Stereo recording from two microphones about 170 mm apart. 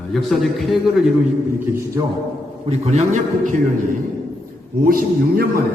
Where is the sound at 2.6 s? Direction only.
40° right (ahead or behind).